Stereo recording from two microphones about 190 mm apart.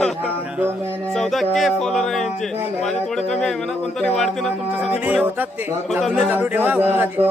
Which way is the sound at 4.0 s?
5° left (ahead or behind).